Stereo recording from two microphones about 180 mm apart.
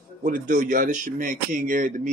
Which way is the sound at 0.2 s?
50° right (ahead or behind).